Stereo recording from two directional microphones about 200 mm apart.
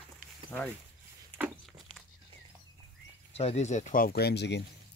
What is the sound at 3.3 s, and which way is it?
Speech, 30° left (ahead or behind).